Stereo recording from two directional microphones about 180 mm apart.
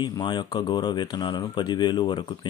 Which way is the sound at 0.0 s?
25° left (ahead or behind).